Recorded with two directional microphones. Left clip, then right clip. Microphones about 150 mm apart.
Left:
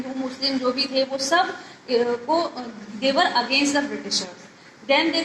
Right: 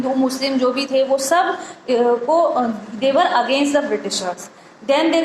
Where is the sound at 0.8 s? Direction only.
50° right (ahead or behind).